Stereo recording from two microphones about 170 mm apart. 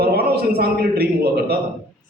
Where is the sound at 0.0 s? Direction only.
65° right (ahead or behind).